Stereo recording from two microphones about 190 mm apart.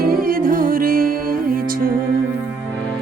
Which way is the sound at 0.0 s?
50° right (ahead or behind).